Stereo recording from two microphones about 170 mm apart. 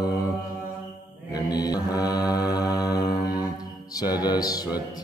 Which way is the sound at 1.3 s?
25° left (ahead or behind).